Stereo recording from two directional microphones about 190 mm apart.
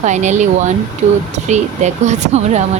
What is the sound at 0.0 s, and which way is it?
Speech, 40° right (ahead or behind).